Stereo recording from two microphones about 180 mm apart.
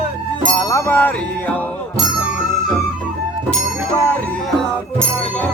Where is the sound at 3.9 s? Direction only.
15° left (ahead or behind).